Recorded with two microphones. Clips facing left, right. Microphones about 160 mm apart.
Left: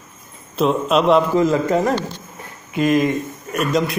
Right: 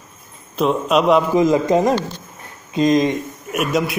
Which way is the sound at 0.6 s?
Centre (ahead or behind).